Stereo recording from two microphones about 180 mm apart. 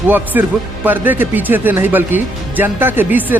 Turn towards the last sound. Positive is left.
turn(degrees=-10)  # may be behind; listen again after turning